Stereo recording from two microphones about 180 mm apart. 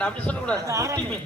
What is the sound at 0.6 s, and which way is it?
Speech, 15° right (ahead or behind).